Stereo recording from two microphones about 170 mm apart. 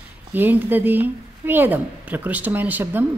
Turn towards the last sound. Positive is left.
turn(degrees=-10)  # may be behind; listen again after turning